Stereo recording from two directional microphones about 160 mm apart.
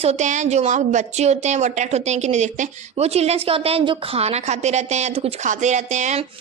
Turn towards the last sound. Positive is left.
turn(degrees=-45)  # may be behind; listen again after turning